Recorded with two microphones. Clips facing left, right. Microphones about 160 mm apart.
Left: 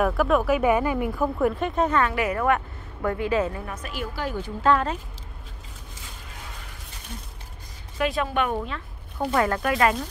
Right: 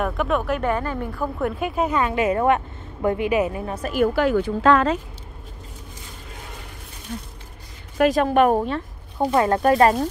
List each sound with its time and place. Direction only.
0.0 s speech: centre (ahead or behind); by 3.6 s 15° right (ahead or behind)
3.6 s speech: 35° right (ahead or behind)
3.9 s speech: 55° right (ahead or behind); by 4.9 s 90° right
8.0 s speech: 45° right (ahead or behind)